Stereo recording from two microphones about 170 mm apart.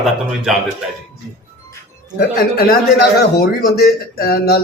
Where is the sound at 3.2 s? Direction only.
65° left (ahead or behind).